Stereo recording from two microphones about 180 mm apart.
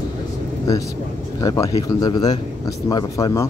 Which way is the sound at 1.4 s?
20° left (ahead or behind).